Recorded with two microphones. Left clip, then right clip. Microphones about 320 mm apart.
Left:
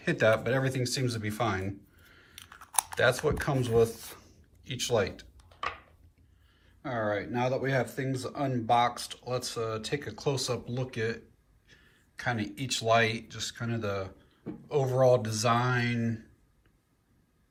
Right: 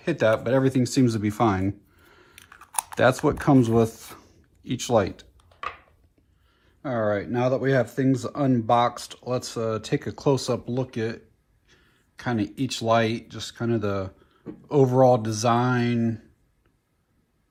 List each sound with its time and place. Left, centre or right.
0.0 s speech: centre
2.0 s a sound: centre
2.5 s chewing: centre
2.9 s speech: centre
6.8 s speech: centre